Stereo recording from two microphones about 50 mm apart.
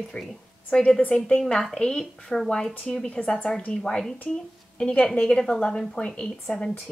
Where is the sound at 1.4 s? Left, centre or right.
Centre.